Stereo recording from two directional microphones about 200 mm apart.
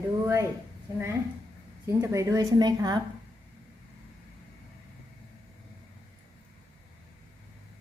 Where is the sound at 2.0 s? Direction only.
15° right (ahead or behind).